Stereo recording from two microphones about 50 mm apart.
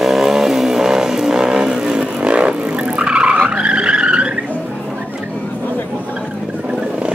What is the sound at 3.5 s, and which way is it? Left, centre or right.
Skidding, right.